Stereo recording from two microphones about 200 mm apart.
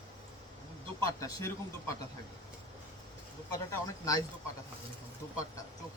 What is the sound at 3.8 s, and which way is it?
Speech, 15° left (ahead or behind).